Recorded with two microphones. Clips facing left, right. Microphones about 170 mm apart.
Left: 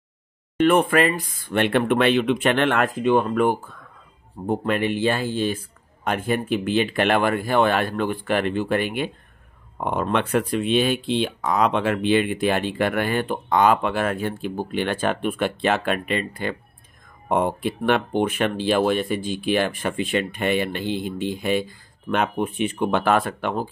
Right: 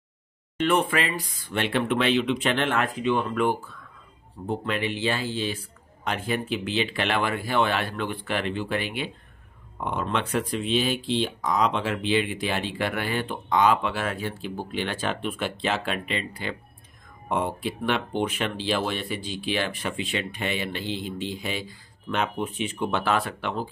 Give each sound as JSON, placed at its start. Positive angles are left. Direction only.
{"t": 0.7, "sound": "speech", "side_deg": 50}